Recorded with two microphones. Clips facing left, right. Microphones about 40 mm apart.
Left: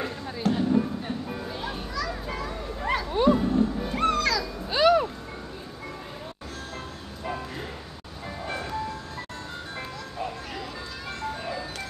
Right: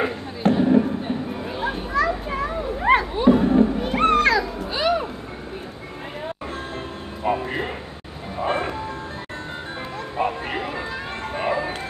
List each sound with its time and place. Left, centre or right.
0.0 s basketball bounce: right
1.6 s children playing: right
3.3 s music: right
3.7 s music: right
4.0 s music: right
4.6 s music: centre
7.2 s a sound: right
8.4 s vehicle: right
10.1 s music: right
11.2 s ice cream truck: right